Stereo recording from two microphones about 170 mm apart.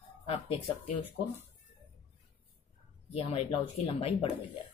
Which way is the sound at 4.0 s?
35° left (ahead or behind).